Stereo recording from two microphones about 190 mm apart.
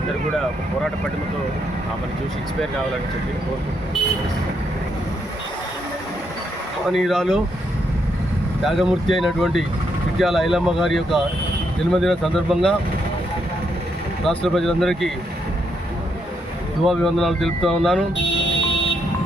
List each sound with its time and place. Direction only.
6.8 s speech: centre (ahead or behind)
8.6 s speech: centre (ahead or behind)
14.3 s speech: centre (ahead or behind)
16.8 s speech: centre (ahead or behind)
18.2 s a sound: 70° left (ahead or behind)